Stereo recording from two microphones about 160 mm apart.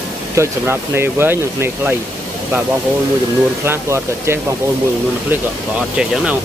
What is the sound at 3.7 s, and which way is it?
Speech, 15° right (ahead or behind).